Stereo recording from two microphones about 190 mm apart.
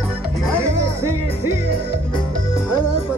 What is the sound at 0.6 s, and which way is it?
Music, 15° right (ahead or behind).